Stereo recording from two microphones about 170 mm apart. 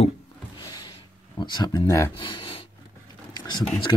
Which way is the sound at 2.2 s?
30° left (ahead or behind).